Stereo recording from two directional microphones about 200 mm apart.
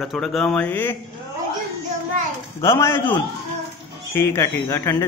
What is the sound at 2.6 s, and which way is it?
Speech, 15° left (ahead or behind).